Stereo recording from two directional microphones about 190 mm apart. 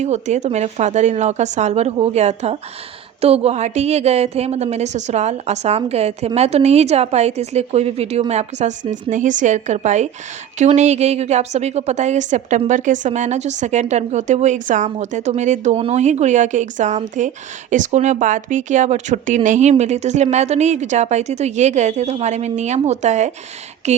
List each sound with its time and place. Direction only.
0.0 s a woman's voice: 35° right (ahead or behind)